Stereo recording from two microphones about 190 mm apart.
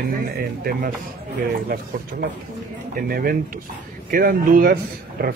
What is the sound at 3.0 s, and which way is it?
A man's voice, 50° right (ahead or behind).